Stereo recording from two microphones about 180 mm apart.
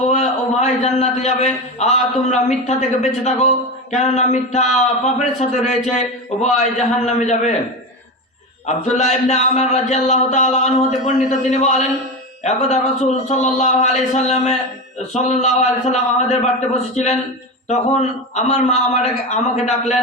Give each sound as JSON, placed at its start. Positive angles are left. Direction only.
{"t": 0.0, "sound": "a man's voice", "side_deg": 40}
{"t": 8.6, "sound": "a man's voice", "side_deg": 40}